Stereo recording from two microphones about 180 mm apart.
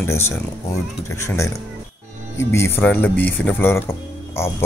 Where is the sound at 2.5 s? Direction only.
15° left (ahead or behind).